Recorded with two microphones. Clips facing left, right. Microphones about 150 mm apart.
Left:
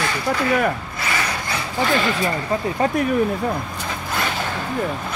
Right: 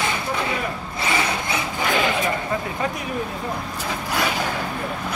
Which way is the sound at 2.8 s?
40° left (ahead or behind).